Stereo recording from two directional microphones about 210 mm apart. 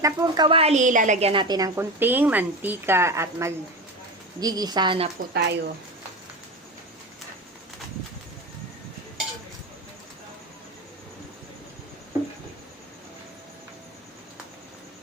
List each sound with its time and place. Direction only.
0.0 s a woman's voice: 20° right (ahead or behind)
5.3 s speech: 50° right (ahead or behind)